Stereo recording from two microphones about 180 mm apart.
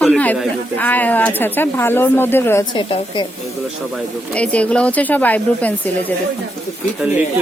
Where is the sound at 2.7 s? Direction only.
25° left (ahead or behind).